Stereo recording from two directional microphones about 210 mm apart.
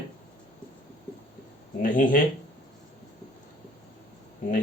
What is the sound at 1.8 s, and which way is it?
Speech, 40° left (ahead or behind).